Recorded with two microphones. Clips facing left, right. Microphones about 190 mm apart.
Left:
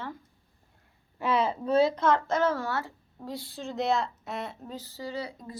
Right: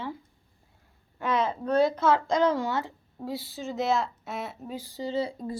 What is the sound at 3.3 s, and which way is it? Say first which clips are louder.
Speech: right 2 dB; 5° right (ahead or behind).